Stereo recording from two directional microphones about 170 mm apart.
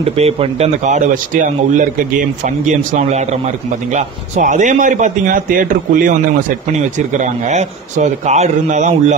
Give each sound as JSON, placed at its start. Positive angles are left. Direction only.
{"t": 0.0, "sound": "speech", "side_deg": -35}
{"t": 7.2, "sound": "speech", "side_deg": -45}